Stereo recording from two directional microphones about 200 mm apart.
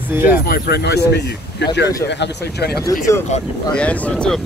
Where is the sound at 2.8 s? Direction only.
15° left (ahead or behind).